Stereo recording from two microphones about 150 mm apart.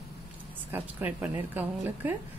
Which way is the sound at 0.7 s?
15° right (ahead or behind).